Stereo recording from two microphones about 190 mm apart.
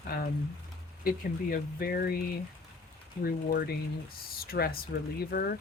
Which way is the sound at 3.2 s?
55° left (ahead or behind).